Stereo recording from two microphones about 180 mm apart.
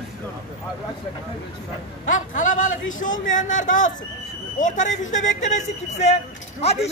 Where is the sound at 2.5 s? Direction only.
45° left (ahead or behind).